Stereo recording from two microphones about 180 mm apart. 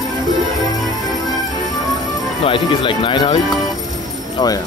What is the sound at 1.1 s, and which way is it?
Music, 20° left (ahead or behind).